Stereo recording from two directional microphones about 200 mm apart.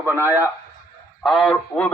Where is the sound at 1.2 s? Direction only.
Centre (ahead or behind).